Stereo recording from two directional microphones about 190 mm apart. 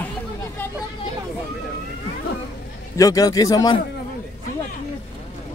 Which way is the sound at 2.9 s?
20° left (ahead or behind).